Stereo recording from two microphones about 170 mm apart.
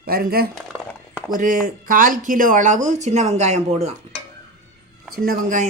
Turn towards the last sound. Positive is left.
turn(degrees=-55)  # may be behind; listen again after turning